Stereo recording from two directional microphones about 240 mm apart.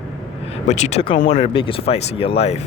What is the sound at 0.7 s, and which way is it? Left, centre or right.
Speech, left.